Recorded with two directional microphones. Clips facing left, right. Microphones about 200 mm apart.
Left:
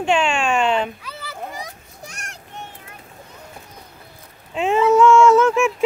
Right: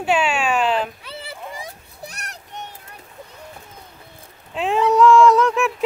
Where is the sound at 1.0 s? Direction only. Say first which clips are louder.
Left 1 dB; 30° right (ahead or behind).